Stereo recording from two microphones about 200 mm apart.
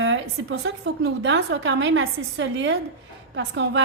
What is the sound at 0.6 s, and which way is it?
A woman's voice, 70° right (ahead or behind).